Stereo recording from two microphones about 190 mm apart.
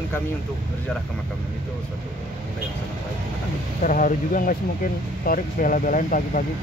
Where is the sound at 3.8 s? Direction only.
45° left (ahead or behind).